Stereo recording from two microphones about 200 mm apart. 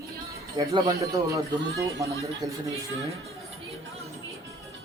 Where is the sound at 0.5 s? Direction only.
20° right (ahead or behind).